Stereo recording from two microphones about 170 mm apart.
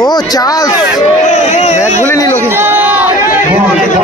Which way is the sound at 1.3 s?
40° left (ahead or behind).